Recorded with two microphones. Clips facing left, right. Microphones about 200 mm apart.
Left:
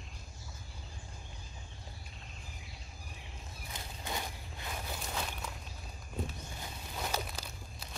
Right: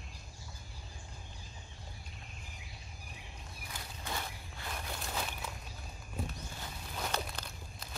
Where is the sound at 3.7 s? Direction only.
20° left (ahead or behind).